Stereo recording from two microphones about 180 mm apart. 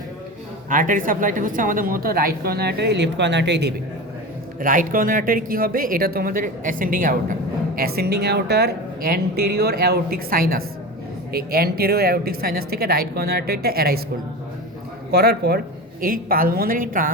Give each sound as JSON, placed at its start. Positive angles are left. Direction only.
{"t": 0.7, "sound": "a woman's voice", "side_deg": -50}
{"t": 4.6, "sound": "speech", "side_deg": -50}
{"t": 7.8, "sound": "a woman's voice", "side_deg": -60}
{"t": 15.1, "sound": "speech", "side_deg": -65}